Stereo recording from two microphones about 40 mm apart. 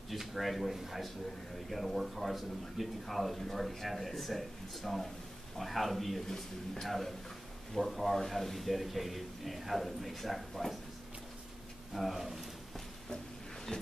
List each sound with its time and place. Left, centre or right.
0.1 s speech: centre
11.9 s speech: centre
13.7 s a sound: left